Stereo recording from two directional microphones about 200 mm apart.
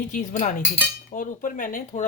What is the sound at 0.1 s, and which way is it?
Speech, 40° left (ahead or behind).